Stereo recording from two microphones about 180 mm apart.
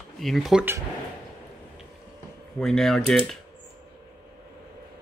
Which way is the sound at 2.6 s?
Centre (ahead or behind).